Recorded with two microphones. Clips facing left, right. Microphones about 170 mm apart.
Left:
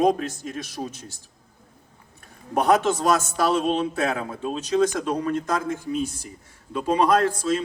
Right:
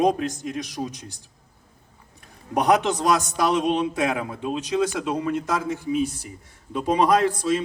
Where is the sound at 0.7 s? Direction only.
15° right (ahead or behind).